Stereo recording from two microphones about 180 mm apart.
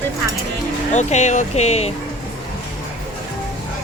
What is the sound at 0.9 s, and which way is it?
A woman's voice, 40° left (ahead or behind).